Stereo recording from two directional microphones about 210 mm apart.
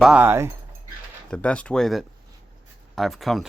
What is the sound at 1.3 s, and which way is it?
Speech, 5° left (ahead or behind).